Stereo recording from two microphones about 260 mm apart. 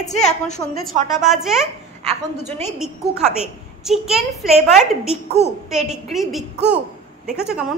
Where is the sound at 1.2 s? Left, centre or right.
Centre.